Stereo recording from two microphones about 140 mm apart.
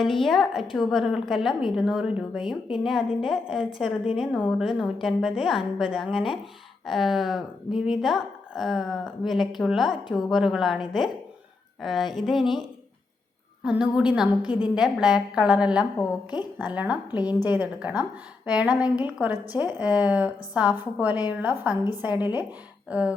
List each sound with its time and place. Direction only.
0.0 s a woman's voice: centre (ahead or behind)
6.1 s speech: 40° left (ahead or behind)
6.8 s a woman's voice: centre (ahead or behind)
13.7 s a woman's voice: 5° right (ahead or behind)
17.1 s a woman's voice: 30° left (ahead or behind)
17.4 s a woman's voice: 10° right (ahead or behind)